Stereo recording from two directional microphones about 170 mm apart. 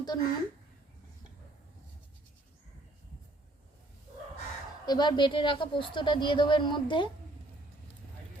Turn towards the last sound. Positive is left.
turn(degrees=30)  # may be behind; listen again after turning